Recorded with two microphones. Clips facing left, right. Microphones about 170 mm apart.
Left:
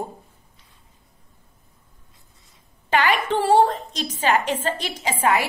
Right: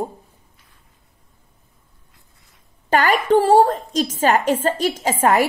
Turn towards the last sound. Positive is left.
turn(degrees=-45)  # may be behind; listen again after turning